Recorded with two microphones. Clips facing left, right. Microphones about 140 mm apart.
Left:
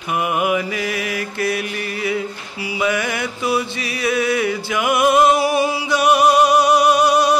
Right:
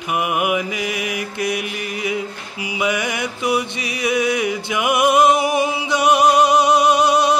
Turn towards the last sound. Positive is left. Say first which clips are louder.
# left 1 dB
turn(degrees=-20)  # may be behind; listen again after turning